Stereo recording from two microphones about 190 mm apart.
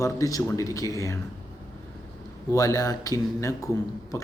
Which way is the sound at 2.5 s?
20° left (ahead or behind).